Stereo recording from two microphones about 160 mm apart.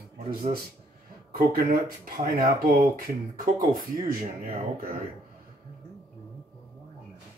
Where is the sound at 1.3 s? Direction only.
70° right (ahead or behind).